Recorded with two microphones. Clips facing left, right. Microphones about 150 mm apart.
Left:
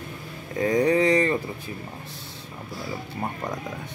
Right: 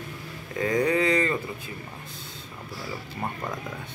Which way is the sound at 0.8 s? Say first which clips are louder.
Left 4 dB; 25° left (ahead or behind).